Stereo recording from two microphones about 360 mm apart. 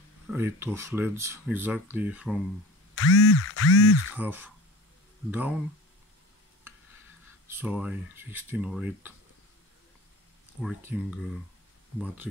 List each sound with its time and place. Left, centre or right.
0.3 s speech: centre
3.0 s a sound: left
4.2 s speech: centre
7.4 s speech: centre
10.6 s speech: centre